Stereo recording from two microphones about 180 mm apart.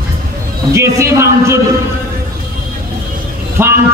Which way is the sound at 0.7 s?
15° right (ahead or behind).